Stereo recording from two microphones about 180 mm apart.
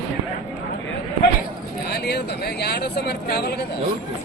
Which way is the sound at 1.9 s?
65° left (ahead or behind).